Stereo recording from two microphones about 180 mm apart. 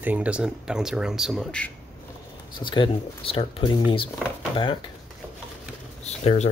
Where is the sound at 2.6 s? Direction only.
25° left (ahead or behind).